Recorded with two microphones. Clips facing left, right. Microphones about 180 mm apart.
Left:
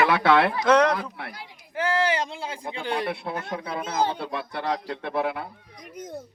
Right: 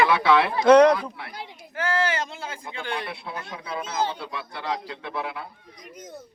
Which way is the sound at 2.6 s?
35° left (ahead or behind).